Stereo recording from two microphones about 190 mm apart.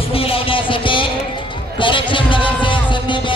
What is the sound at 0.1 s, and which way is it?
Music, 30° left (ahead or behind).